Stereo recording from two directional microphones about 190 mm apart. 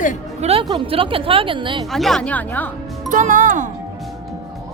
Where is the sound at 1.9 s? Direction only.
Centre (ahead or behind).